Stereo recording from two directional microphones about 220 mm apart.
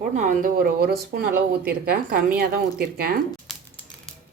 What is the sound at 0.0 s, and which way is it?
A woman's voice, 35° right (ahead or behind).